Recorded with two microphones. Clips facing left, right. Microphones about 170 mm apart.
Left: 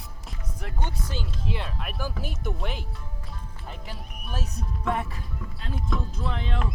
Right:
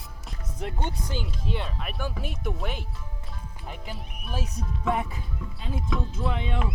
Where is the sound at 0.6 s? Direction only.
25° right (ahead or behind).